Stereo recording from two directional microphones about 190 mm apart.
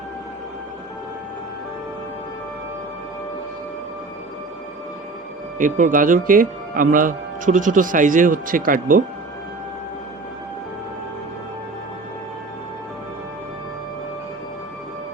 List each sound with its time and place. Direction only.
5.5 s speech: 45° right (ahead or behind)